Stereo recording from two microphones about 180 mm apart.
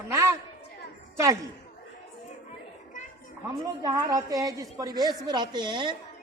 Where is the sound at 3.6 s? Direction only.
20° right (ahead or behind).